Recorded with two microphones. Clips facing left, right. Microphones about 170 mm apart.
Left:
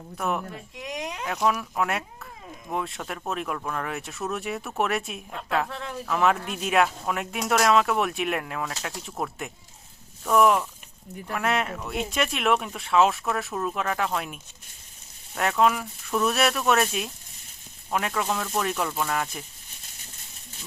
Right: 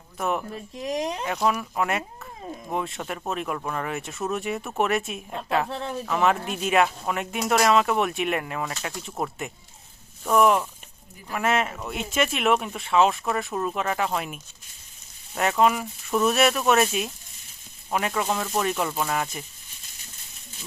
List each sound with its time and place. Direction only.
0.2 s speech: centre (ahead or behind)
0.8 s speech: 35° right (ahead or behind)
1.2 s speech: centre (ahead or behind)
5.6 s speech: 30° right (ahead or behind)
6.1 s speech: centre (ahead or behind)
15.4 s speech: centre (ahead or behind)